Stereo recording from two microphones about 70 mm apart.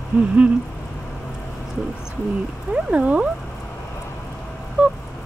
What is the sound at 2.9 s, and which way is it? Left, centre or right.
Speech, centre.